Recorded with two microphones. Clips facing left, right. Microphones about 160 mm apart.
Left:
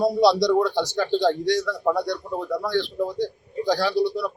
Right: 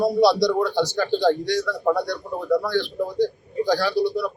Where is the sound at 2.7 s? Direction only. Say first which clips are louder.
Even; 25° left (ahead or behind).